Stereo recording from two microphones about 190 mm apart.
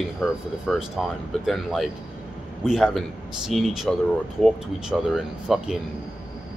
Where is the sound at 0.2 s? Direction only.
Centre (ahead or behind).